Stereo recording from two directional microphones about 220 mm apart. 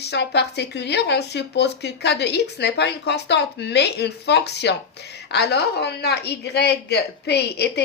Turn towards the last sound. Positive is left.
turn(degrees=50)  # may be behind; listen again after turning